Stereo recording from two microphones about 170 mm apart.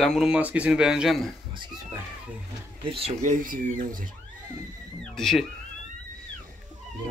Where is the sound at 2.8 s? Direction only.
35° right (ahead or behind); by 4.1 s 55° right (ahead or behind).